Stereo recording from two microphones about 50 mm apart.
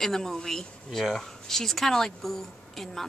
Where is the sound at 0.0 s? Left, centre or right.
Centre.